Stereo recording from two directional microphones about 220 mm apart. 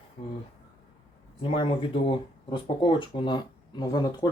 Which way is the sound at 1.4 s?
25° left (ahead or behind).